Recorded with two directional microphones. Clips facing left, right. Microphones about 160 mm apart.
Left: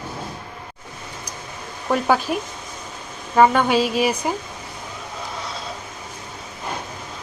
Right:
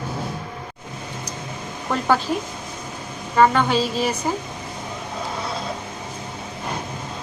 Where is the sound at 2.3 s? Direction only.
15° left (ahead or behind).